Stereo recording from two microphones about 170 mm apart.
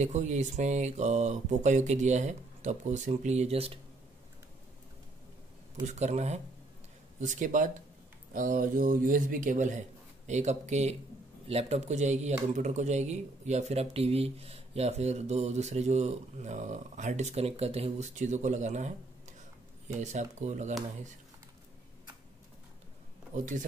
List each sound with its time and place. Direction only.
0.0 s speech: 45° right (ahead or behind)
5.9 s speech: 40° right (ahead or behind)
23.3 s speech: 50° right (ahead or behind)